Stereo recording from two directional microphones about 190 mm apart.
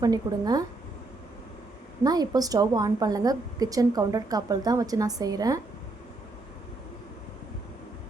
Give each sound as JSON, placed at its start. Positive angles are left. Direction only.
{"t": 0.0, "sound": "a woman's voice", "side_deg": -20}
{"t": 2.0, "sound": "a woman's voice", "side_deg": -20}